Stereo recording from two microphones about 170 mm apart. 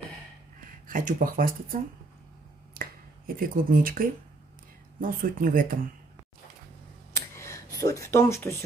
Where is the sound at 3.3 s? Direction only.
55° right (ahead or behind).